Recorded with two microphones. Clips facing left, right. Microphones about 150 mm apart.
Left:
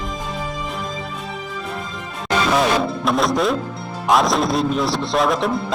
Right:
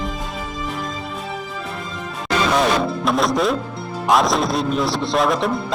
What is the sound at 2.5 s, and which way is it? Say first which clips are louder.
Music: even; centre (ahead or behind).